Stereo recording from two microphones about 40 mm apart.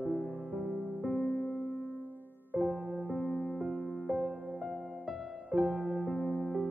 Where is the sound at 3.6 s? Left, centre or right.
Right.